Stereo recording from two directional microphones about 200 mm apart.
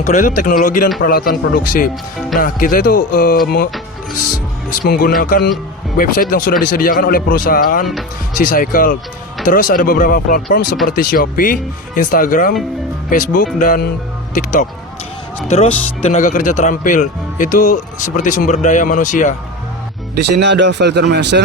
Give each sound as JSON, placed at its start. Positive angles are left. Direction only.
{"t": 0.0, "sound": "a man's voice", "side_deg": 40}
{"t": 4.7, "sound": "a man's voice", "side_deg": 50}
{"t": 20.1, "sound": "speech", "side_deg": -55}